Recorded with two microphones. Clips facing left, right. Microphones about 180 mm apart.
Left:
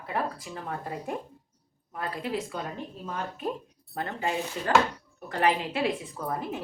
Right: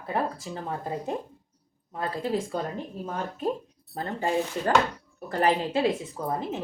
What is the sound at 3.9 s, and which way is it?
Speech, 35° right (ahead or behind).